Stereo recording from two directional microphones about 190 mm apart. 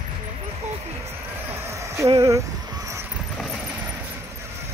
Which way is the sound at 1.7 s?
15° right (ahead or behind).